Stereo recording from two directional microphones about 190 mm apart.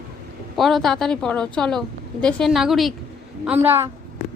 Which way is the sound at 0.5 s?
Centre (ahead or behind).